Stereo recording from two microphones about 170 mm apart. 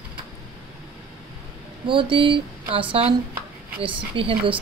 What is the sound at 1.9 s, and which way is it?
Speech, 30° right (ahead or behind).